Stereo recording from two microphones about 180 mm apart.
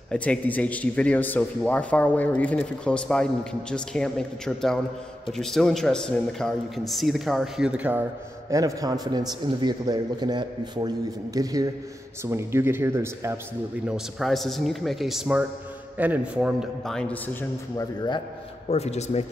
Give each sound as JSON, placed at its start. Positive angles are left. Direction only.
{"t": 0.1, "sound": "a man's voice", "side_deg": 5}
{"t": 8.5, "sound": "a man's voice", "side_deg": -20}
{"t": 13.8, "sound": "a man's voice", "side_deg": 0}
{"t": 18.7, "sound": "a man's voice", "side_deg": 35}